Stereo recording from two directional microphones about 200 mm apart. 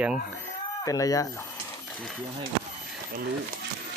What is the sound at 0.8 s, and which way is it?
Speech, 15° left (ahead or behind).